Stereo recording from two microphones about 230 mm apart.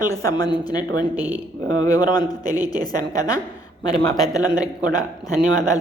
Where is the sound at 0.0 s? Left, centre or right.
Centre.